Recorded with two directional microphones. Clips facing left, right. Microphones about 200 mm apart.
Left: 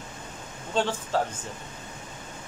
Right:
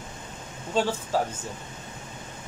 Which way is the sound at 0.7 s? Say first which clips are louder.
Right 1 dB; 10° right (ahead or behind).